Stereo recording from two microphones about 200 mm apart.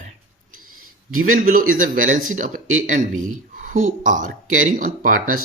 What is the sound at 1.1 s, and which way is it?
A man's voice, 45° right (ahead or behind).